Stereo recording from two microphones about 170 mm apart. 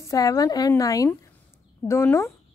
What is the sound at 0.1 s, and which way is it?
A woman's voice, 20° left (ahead or behind).